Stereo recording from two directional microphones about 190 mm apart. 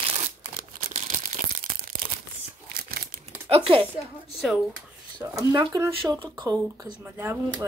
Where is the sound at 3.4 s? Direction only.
30° right (ahead or behind).